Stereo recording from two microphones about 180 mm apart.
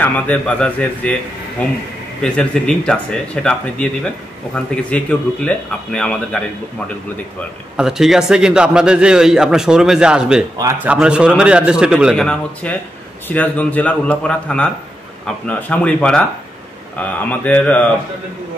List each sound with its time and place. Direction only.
0.0 s a man's voice: 10° left (ahead or behind)
7.7 s a man's voice: 5° right (ahead or behind)
10.6 s a man's voice: 20° right (ahead or behind)
10.9 s a man's voice: 5° right (ahead or behind)